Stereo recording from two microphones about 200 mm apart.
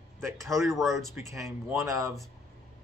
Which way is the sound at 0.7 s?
Centre (ahead or behind).